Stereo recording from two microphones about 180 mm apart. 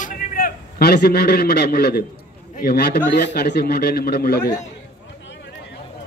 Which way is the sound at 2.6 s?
60° left (ahead or behind).